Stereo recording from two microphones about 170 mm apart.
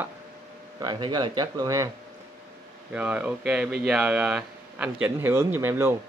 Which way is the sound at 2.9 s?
10° right (ahead or behind).